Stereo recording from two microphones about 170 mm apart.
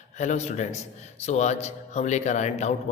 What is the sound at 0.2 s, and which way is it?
A man's voice, 40° left (ahead or behind).